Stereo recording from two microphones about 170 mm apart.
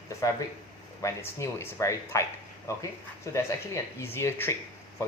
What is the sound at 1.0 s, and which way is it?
Speech, 15° left (ahead or behind).